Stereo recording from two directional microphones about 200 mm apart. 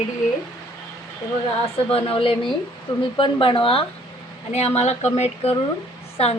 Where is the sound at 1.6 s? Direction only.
30° left (ahead or behind).